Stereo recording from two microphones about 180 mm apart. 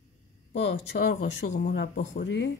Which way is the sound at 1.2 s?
45° left (ahead or behind).